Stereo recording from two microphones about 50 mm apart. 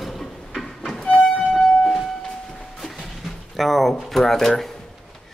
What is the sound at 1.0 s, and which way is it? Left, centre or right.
Violin, left.